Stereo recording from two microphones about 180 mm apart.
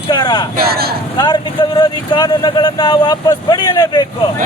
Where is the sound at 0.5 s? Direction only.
60° right (ahead or behind).